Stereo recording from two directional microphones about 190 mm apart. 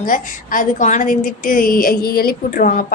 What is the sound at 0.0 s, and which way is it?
A woman's voice, 45° left (ahead or behind).